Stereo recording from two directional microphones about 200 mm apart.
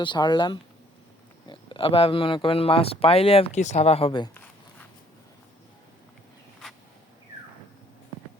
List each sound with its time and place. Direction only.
0.0 s speech: 25° left (ahead or behind)